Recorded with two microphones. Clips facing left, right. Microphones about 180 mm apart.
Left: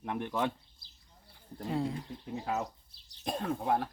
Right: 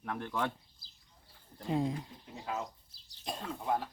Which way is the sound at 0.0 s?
20° left (ahead or behind).